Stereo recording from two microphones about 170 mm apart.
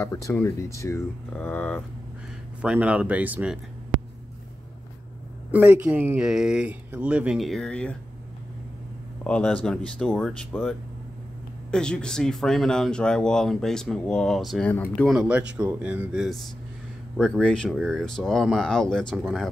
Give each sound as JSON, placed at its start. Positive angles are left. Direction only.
{"t": 0.0, "sound": "speech", "side_deg": 15}
{"t": 2.6, "sound": "speech", "side_deg": -5}
{"t": 5.5, "sound": "speech", "side_deg": -10}
{"t": 9.2, "sound": "speech", "side_deg": 5}
{"t": 15.0, "sound": "speech", "side_deg": -5}